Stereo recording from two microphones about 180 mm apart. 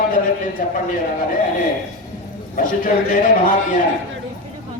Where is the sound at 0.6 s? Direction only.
50° left (ahead or behind).